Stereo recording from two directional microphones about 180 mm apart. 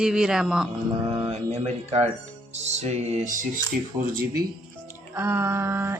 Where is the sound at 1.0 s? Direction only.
20° right (ahead or behind).